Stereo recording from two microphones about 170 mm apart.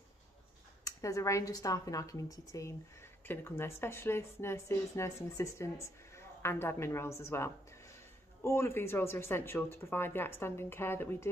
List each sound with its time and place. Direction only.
0.8 s speech: 20° left (ahead or behind)